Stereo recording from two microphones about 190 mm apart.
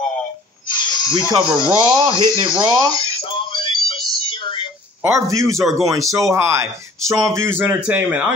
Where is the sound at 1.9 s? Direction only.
25° right (ahead or behind).